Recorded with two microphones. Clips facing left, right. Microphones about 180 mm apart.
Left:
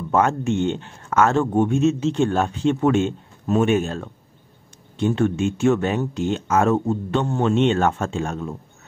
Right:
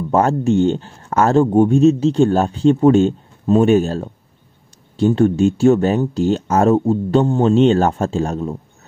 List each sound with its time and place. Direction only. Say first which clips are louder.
0.1 s speech: right 4 dB; 35° right (ahead or behind)